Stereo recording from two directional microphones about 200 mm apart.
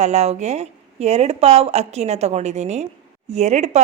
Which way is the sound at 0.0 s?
35° right (ahead or behind).